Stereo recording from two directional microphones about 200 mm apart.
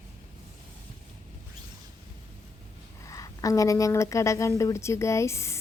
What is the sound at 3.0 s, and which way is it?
Speech, 15° left (ahead or behind).